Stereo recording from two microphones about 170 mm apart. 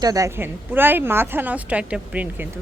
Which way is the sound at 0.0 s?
20° right (ahead or behind).